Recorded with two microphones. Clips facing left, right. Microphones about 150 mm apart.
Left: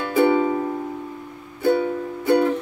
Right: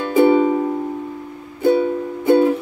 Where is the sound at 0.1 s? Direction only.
20° right (ahead or behind).